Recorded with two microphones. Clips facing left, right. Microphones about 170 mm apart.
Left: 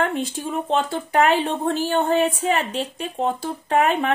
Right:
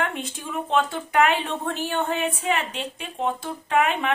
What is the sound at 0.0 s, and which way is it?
Speech, 35° left (ahead or behind).